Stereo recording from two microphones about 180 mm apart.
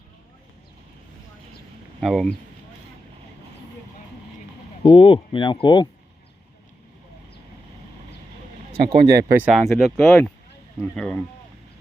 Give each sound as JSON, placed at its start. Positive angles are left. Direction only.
{"t": 2.0, "sound": "speech", "side_deg": 0}
{"t": 4.8, "sound": "speech", "side_deg": 30}
{"t": 9.0, "sound": "speech", "side_deg": -60}
{"t": 9.3, "sound": "speech", "side_deg": -5}